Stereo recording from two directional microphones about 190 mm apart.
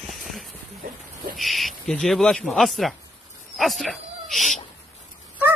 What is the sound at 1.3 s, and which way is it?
Speech, centre (ahead or behind).